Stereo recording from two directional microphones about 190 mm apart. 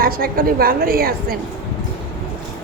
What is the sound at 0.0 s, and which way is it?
A woman's voice, 50° right (ahead or behind).